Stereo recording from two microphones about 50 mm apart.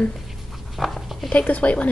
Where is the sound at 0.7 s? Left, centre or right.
Centre.